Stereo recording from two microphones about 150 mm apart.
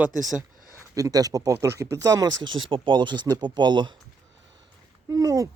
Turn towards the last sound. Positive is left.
turn(degrees=-20)  # may be behind; listen again after turning